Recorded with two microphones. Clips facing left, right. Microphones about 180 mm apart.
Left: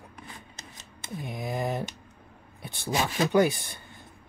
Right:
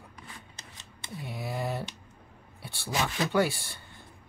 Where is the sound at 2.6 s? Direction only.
20° left (ahead or behind).